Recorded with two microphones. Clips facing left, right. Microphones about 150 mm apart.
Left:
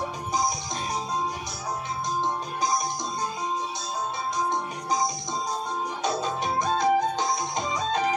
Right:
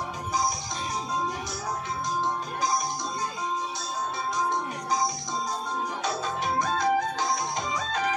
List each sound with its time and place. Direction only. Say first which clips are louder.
6.0 s music: left 4 dB; 20° left (ahead or behind)